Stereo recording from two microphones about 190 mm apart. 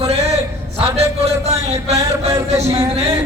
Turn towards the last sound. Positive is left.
turn(degrees=-35)  # may be behind; listen again after turning